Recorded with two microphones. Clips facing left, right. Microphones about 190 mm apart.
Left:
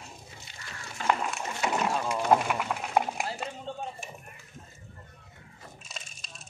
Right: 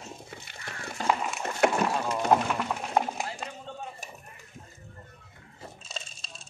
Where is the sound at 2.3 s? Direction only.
10° left (ahead or behind).